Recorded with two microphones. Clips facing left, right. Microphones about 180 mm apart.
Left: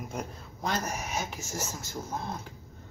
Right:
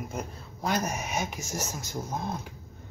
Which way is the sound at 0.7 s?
20° right (ahead or behind).